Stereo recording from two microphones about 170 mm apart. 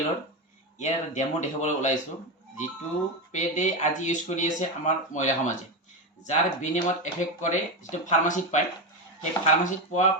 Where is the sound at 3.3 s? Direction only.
45° left (ahead or behind).